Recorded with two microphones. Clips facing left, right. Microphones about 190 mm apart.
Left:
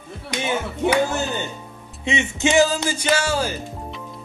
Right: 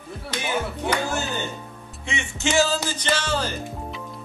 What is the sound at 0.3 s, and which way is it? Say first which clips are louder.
Speech: left 5 dB; 15° left (ahead or behind).